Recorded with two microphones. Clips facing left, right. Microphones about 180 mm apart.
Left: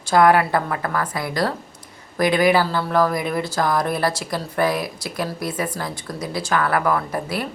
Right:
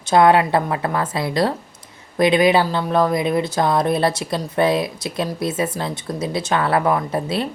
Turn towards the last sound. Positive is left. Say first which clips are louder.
# right 3 dB
turn(degrees=-25)  # may be behind; listen again after turning